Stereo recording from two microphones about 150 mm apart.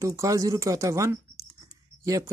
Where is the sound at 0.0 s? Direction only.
20° right (ahead or behind).